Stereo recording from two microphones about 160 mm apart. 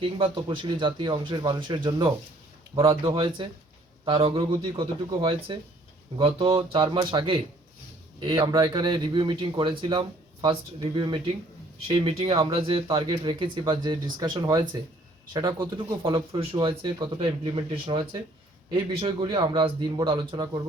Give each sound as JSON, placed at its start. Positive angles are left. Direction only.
{"t": 0.0, "sound": "speech", "side_deg": -30}
{"t": 8.4, "sound": "speech", "side_deg": -20}
{"t": 16.4, "sound": "speech", "side_deg": -30}